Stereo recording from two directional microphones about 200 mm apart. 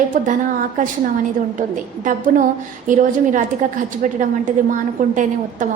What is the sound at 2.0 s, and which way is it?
A woman's voice, 40° right (ahead or behind).